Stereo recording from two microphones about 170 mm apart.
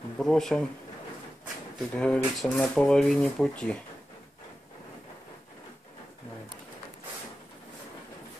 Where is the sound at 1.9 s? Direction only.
5° left (ahead or behind).